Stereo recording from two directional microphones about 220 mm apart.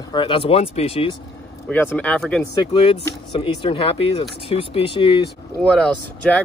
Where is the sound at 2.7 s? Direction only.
25° left (ahead or behind).